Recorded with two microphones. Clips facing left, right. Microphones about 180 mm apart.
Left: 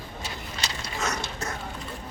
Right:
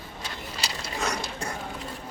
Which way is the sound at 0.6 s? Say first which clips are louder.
Right 1 dB; 10° right (ahead or behind).